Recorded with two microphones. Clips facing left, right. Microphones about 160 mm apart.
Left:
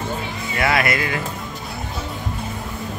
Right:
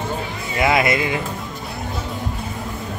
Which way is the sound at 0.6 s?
20° right (ahead or behind).